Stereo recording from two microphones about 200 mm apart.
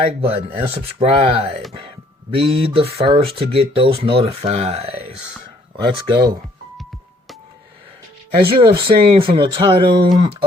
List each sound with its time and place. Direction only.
0.0 s speech: 30° right (ahead or behind)
5.7 s speech: 20° right (ahead or behind)
8.5 s speech: 25° right (ahead or behind)